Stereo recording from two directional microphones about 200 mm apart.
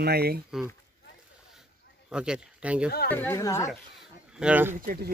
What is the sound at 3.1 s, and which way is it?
Speech, 10° left (ahead or behind).